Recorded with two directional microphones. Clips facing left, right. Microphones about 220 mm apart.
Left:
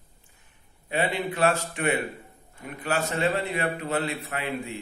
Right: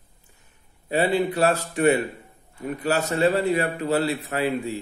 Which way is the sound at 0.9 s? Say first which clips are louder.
Right 6 dB; 35° right (ahead or behind).